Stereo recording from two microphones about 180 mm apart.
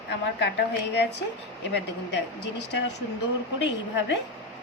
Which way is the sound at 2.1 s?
75° left (ahead or behind).